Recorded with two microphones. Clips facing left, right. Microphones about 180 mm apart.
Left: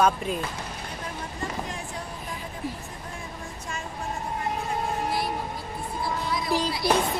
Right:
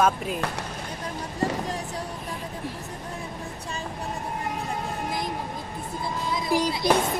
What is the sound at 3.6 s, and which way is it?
Vehicle, 35° right (ahead or behind).